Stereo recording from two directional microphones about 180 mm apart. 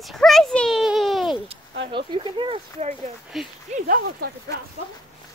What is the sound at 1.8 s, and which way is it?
Speech, 25° right (ahead or behind).